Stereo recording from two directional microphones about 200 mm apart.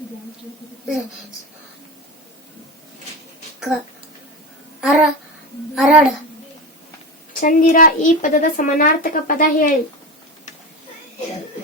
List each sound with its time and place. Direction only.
4.8 s speech: centre (ahead or behind)
7.3 s a woman's voice: 45° left (ahead or behind)